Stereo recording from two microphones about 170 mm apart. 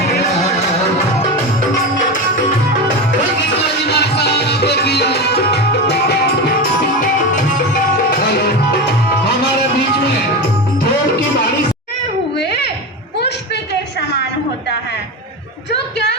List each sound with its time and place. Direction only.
3.8 s music: 75° left (ahead or behind)
8.1 s music: 65° left (ahead or behind)
12.4 s a sound: 75° left (ahead or behind)